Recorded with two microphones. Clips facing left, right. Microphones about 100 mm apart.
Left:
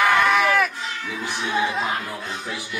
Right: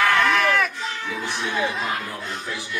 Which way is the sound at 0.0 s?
15° left (ahead or behind).